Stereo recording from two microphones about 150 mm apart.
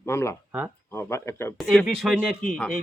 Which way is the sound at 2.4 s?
5° left (ahead or behind).